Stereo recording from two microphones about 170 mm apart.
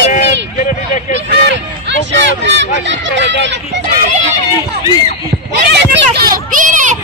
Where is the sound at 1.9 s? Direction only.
90° right.